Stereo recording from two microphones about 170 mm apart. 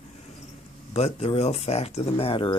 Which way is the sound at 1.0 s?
40° left (ahead or behind).